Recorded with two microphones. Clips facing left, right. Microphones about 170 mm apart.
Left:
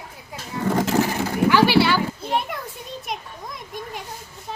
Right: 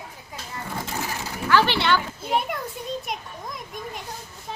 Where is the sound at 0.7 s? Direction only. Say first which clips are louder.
Left 11 dB; 90° left.